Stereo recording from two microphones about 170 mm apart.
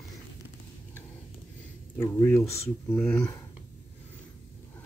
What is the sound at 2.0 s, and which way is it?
Speech, 15° left (ahead or behind).